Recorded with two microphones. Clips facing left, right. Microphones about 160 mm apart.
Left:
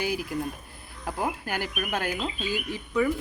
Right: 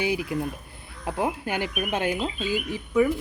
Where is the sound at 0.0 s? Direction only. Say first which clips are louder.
Right 3 dB; 20° right (ahead or behind).